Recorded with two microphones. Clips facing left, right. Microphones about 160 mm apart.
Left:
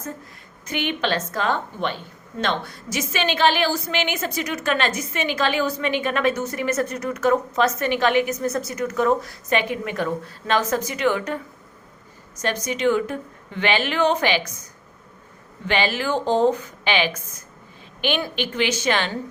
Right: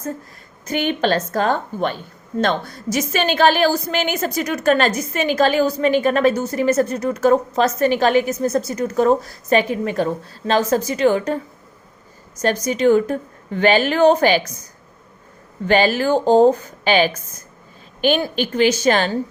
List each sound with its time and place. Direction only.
0.6 s a woman's voice: 40° right (ahead or behind)
12.4 s a woman's voice: 40° right (ahead or behind)
15.6 s a woman's voice: 40° right (ahead or behind)